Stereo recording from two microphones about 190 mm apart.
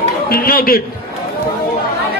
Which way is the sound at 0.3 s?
50° left (ahead or behind).